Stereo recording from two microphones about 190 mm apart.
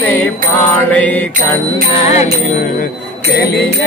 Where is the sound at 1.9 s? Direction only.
35° left (ahead or behind).